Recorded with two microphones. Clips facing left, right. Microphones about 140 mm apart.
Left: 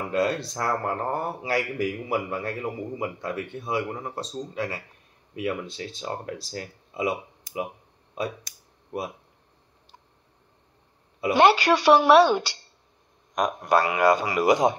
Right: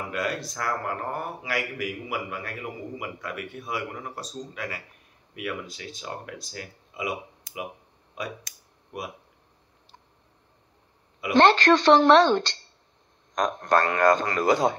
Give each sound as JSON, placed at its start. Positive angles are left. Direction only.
{"t": 0.1, "sound": "speech", "side_deg": 30}
{"t": 11.3, "sound": "speech", "side_deg": 10}